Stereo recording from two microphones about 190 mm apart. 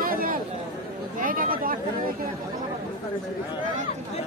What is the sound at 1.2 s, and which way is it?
Chatter, 45° right (ahead or behind).